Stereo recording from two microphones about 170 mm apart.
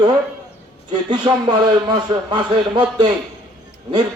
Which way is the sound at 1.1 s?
25° right (ahead or behind).